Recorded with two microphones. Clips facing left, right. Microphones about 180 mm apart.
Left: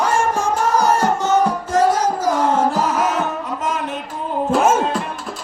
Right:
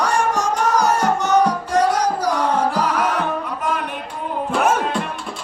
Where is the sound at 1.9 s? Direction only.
25° left (ahead or behind).